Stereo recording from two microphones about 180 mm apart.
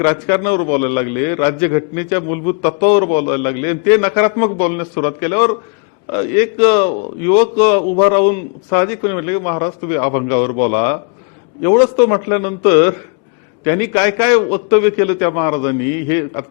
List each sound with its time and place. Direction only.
0.0 s a man's voice: 15° left (ahead or behind)